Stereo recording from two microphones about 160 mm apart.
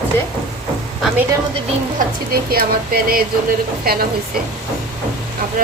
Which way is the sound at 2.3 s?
70° right (ahead or behind).